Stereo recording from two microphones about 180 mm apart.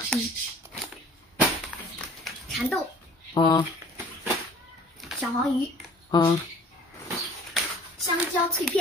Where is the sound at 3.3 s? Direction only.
25° left (ahead or behind).